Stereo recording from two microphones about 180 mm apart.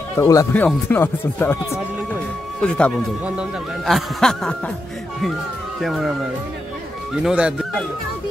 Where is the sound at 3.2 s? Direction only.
5° right (ahead or behind).